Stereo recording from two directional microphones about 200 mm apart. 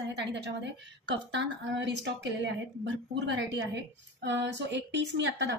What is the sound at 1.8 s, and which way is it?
A woman's voice, 60° right (ahead or behind).